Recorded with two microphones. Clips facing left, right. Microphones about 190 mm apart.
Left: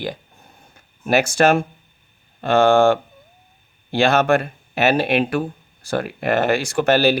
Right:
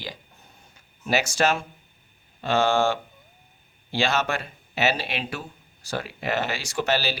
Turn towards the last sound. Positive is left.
turn(degrees=55)  # may be behind; listen again after turning